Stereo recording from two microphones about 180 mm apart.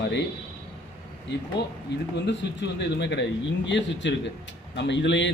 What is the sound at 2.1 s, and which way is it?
A man's voice, 70° left (ahead or behind).